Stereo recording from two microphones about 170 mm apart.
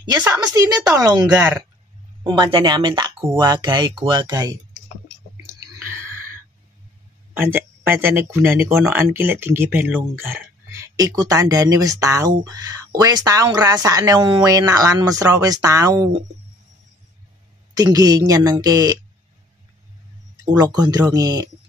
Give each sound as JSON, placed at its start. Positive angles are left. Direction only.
{"t": 0.2, "sound": "speech", "side_deg": -20}
{"t": 7.3, "sound": "speech", "side_deg": -10}
{"t": 17.7, "sound": "speech", "side_deg": -20}
{"t": 20.5, "sound": "speech", "side_deg": -25}